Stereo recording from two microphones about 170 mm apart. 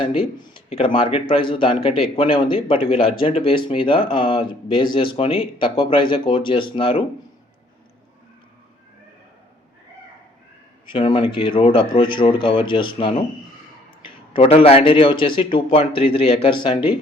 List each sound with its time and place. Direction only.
0.0 s speech: 30° left (ahead or behind)
10.9 s speech: 30° left (ahead or behind)
14.3 s speech: 35° left (ahead or behind)